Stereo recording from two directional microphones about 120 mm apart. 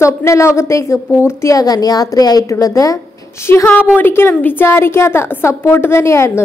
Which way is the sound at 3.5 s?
20° left (ahead or behind).